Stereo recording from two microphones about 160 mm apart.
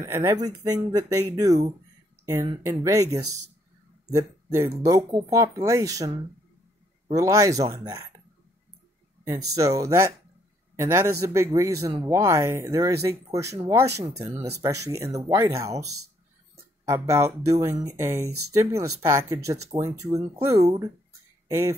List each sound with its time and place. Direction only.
0.0 s speech: 20° right (ahead or behind)
9.5 s speech: 20° right (ahead or behind)
21.5 s speech: 15° right (ahead or behind)